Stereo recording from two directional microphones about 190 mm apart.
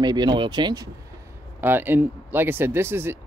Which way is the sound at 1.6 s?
10° right (ahead or behind).